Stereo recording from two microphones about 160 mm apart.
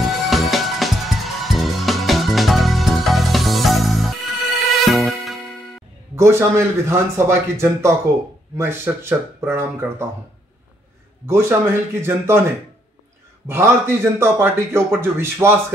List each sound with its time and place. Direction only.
0.0 s music: centre (ahead or behind)
6.1 s a man's voice: 15° right (ahead or behind)
11.2 s a man's voice: 15° right (ahead or behind)
13.5 s a man's voice: 15° right (ahead or behind)